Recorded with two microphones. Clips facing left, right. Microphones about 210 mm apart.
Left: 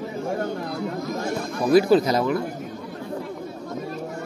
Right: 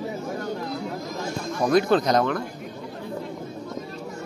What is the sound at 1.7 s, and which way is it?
Speech, 5° left (ahead or behind).